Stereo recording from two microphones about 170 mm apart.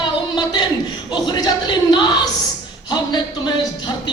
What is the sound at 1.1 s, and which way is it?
Speech, 25° left (ahead or behind).